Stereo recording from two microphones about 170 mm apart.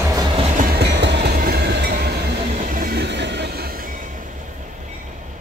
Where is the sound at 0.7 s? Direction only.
85° right; by 2.1 s 70° right (ahead or behind).